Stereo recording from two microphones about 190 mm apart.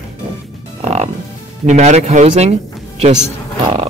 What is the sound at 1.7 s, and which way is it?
Speech, 35° right (ahead or behind).